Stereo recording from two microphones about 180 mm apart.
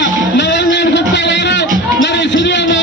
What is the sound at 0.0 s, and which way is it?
Music, 75° left (ahead or behind).